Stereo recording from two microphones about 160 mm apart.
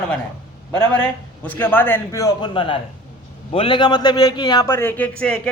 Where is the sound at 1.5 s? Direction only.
10° left (ahead or behind).